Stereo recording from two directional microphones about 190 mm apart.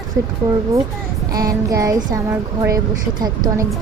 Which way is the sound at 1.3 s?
20° right (ahead or behind).